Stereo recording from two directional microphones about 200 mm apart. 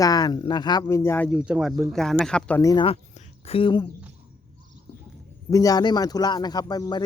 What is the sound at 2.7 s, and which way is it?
Speech, 30° left (ahead or behind).